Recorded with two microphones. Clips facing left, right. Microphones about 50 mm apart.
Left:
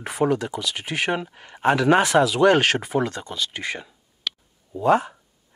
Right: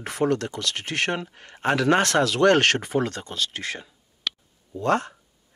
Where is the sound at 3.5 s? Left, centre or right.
Left.